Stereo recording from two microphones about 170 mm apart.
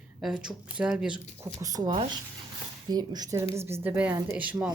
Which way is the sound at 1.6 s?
20° right (ahead or behind).